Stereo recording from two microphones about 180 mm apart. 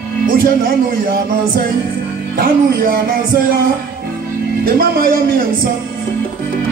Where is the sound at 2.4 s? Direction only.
55° right (ahead or behind).